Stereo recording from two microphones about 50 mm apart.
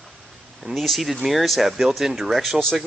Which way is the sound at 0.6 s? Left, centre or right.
Centre.